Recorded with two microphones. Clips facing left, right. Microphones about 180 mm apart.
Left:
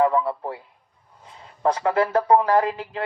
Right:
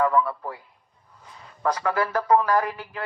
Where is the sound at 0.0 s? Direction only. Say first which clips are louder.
Left 2 dB; 25° left (ahead or behind).